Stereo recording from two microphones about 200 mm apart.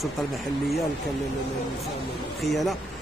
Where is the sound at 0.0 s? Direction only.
Centre (ahead or behind).